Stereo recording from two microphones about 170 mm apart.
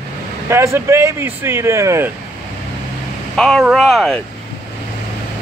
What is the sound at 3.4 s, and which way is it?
Speech, centre (ahead or behind).